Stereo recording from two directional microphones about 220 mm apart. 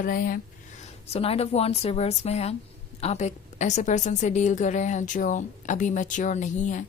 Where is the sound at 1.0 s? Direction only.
25° left (ahead or behind).